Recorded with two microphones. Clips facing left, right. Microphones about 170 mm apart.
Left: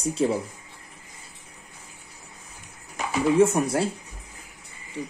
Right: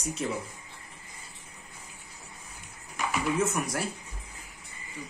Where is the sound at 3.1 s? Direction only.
30° left (ahead or behind).